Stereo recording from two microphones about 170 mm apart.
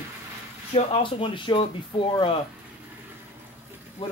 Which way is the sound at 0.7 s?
35° left (ahead or behind).